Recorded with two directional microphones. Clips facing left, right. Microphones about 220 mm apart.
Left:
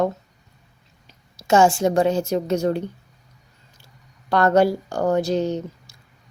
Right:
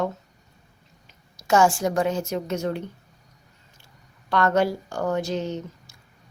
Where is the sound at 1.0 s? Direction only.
25° left (ahead or behind).